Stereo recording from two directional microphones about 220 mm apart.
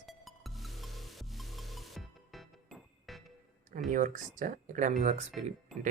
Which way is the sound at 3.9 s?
35° right (ahead or behind).